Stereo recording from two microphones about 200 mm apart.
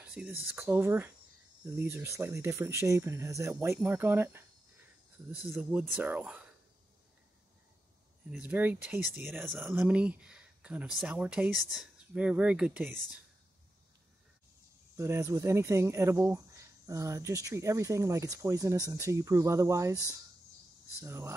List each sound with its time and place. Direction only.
0.0 s speech: 10° right (ahead or behind)
8.3 s speech: 5° right (ahead or behind)
15.0 s speech: 15° right (ahead or behind)
21.0 s speech: 15° right (ahead or behind)